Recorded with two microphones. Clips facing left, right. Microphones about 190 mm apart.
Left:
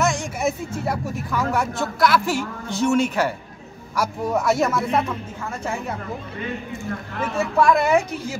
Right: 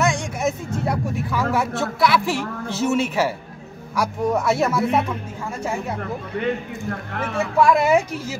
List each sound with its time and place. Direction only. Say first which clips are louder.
0.0 s a sound: even; 5° left (ahead or behind)
0.8 s a man's voice: right 3 dB; centre (ahead or behind)
6.4 s speech: right 4 dB; 55° right (ahead or behind)
7.6 s a man's voice: right 1 dB; 5° right (ahead or behind)